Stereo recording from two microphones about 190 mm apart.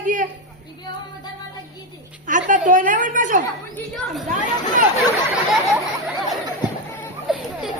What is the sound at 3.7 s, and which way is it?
Speech, centre (ahead or behind).